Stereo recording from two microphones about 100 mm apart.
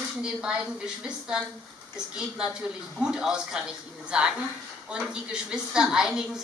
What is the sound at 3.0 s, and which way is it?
A woman's voice, 5° right (ahead or behind).